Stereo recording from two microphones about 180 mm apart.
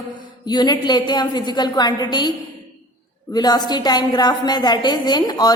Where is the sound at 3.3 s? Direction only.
20° left (ahead or behind).